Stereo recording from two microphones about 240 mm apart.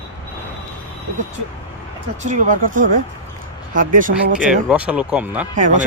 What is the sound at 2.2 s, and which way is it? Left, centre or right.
Speech, right.